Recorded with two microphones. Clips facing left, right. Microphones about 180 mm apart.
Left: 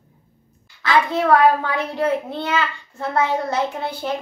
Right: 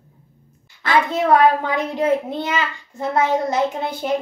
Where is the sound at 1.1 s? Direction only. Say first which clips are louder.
Right 1 dB; 20° right (ahead or behind).